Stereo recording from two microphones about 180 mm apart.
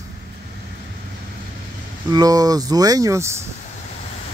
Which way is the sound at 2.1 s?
20° right (ahead or behind).